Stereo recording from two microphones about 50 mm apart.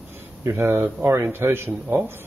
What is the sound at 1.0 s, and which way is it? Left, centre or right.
Speech, right.